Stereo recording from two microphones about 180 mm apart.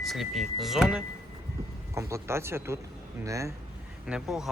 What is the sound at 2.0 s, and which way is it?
Speech, 15° right (ahead or behind).